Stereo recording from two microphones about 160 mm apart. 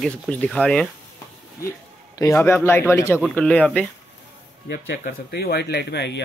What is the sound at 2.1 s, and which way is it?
Speech, 15° left (ahead or behind).